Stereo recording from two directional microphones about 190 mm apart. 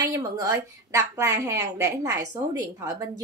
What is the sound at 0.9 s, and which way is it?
A woman's voice, 15° right (ahead or behind).